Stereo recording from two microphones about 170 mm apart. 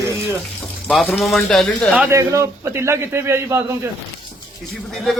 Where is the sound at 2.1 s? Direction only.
15° right (ahead or behind).